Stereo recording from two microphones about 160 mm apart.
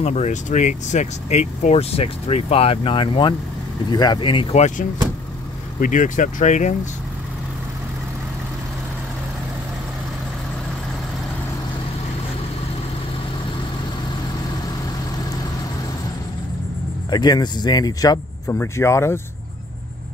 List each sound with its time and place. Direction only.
0.0 s speech: 45° left (ahead or behind)
17.1 s speech: 25° left (ahead or behind)